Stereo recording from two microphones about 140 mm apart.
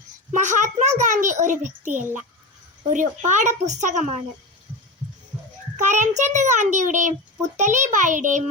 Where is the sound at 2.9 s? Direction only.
65° right (ahead or behind).